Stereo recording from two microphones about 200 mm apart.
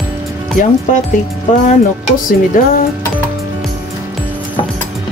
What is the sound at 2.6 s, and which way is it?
Speech, 45° left (ahead or behind).